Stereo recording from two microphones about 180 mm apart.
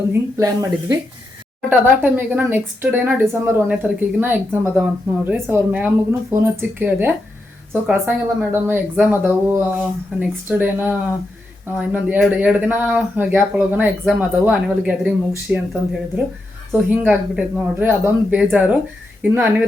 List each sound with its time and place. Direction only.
0.1 s a woman's voice: 15° right (ahead or behind)